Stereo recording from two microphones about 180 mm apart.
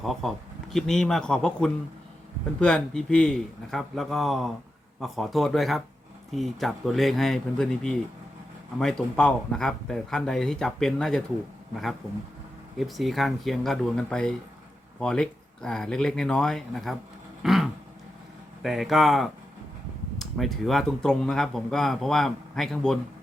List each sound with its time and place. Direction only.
0.0 s speech: centre (ahead or behind)
12.7 s speech: centre (ahead or behind)
17.4 s a sound: centre (ahead or behind)
18.6 s speech: centre (ahead or behind)